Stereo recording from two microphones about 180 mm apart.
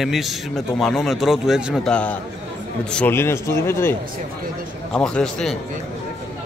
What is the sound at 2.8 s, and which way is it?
A man's voice, 10° left (ahead or behind).